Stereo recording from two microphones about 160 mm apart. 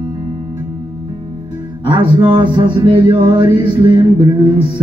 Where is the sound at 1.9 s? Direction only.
30° right (ahead or behind).